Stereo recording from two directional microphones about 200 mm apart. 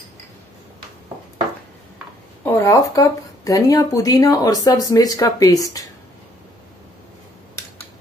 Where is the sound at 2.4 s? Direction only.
15° left (ahead or behind).